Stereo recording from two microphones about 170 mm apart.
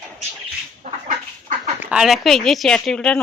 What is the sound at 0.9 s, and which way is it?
Chicken, 45° right (ahead or behind).